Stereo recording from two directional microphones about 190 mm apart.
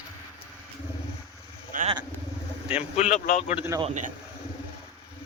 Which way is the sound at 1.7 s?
45° right (ahead or behind).